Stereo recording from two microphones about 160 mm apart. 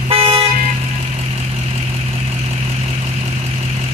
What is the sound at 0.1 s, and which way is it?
Vehicle, 35° right (ahead or behind).